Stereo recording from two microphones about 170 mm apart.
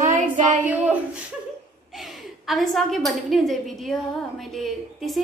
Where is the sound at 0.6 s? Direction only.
10° right (ahead or behind).